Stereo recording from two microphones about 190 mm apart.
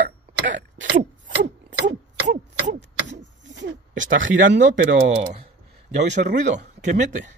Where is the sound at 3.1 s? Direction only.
70° right (ahead or behind).